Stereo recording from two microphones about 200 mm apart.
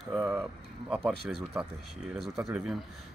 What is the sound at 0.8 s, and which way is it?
Speech, 5° right (ahead or behind).